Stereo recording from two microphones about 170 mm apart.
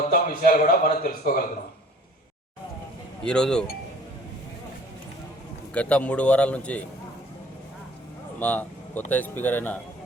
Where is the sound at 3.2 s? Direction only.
5° left (ahead or behind).